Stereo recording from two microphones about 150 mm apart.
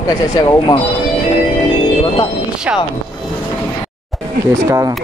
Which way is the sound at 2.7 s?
10° right (ahead or behind).